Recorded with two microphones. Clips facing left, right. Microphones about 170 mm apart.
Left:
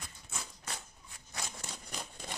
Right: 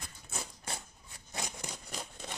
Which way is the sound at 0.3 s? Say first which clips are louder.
Right 3 dB; 30° right (ahead or behind).